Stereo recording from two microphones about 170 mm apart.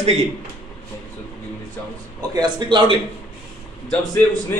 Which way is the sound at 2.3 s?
25° right (ahead or behind).